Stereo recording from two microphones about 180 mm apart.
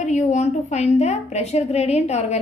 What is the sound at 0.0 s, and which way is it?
A woman's voice, 40° left (ahead or behind).